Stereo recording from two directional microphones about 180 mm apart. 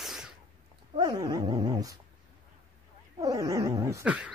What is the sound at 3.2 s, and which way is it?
Cat, 20° right (ahead or behind).